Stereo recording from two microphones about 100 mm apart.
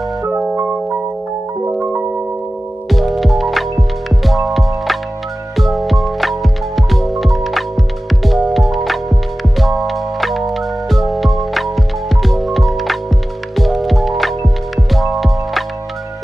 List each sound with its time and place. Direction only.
0.4 s music: 15° right (ahead or behind)
2.9 s music: centre (ahead or behind)